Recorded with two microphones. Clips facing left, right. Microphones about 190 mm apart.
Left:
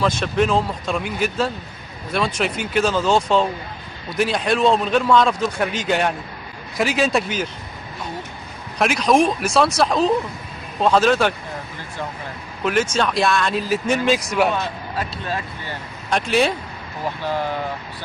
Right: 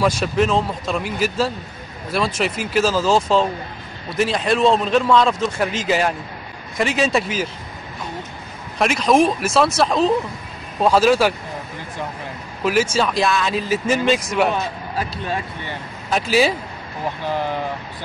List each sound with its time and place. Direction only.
0.0 s a man's voice: 5° right (ahead or behind)
8.7 s a man's voice: centre (ahead or behind)
12.6 s a man's voice: 5° right (ahead or behind)
16.1 s a man's voice: 5° right (ahead or behind)